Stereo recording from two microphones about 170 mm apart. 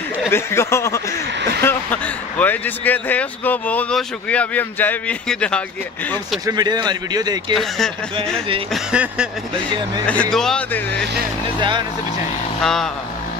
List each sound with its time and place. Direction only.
0.3 s speech: 15° left (ahead or behind)
6.4 s speech: 25° right (ahead or behind)
8.7 s speech: 5° right (ahead or behind)
10.0 s speech: 5° left (ahead or behind)